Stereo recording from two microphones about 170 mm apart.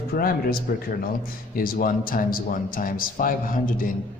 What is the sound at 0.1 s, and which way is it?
A man's voice, 60° left (ahead or behind).